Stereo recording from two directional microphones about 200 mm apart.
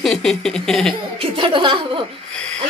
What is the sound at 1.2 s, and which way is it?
Speech, 25° right (ahead or behind).